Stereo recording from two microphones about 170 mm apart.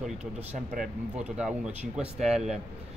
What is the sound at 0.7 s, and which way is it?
Speech, 5° right (ahead or behind).